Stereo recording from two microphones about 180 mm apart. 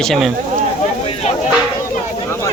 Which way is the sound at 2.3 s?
15° left (ahead or behind).